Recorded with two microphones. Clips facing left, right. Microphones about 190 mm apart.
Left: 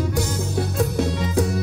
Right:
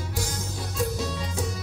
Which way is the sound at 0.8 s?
60° left (ahead or behind).